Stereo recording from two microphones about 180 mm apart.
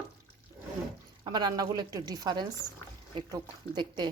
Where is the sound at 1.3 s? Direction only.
25° right (ahead or behind).